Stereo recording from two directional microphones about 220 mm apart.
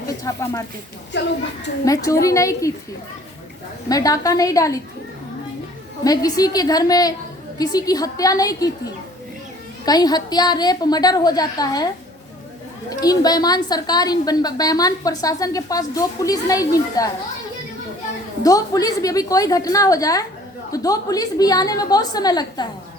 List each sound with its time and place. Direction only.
0.1 s speech: 15° left (ahead or behind)
1.1 s a woman's voice: 50° left (ahead or behind)
1.8 s a woman's voice: 15° left (ahead or behind)
3.8 s a woman's voice: 15° left (ahead or behind)
6.1 s a woman's voice: 15° left (ahead or behind)
9.8 s a woman's voice: 15° left (ahead or behind)
12.9 s a woman's voice: 15° left (ahead or behind)
18.4 s a woman's voice: 15° left (ahead or behind)